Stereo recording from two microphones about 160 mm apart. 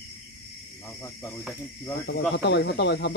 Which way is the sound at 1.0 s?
15° left (ahead or behind).